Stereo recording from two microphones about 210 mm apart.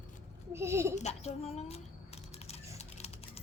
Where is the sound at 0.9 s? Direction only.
30° left (ahead or behind).